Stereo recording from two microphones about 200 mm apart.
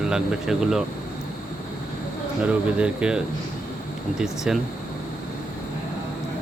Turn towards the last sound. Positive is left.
turn(degrees=-5)  # may be behind; listen again after turning